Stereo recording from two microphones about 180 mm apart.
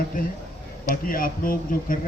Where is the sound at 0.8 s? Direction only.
50° left (ahead or behind).